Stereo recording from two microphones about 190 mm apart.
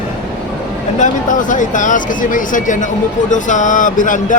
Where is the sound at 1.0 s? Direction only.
40° left (ahead or behind).